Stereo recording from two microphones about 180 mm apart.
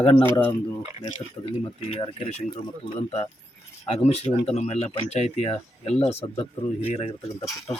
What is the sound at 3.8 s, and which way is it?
Speech, 35° left (ahead or behind).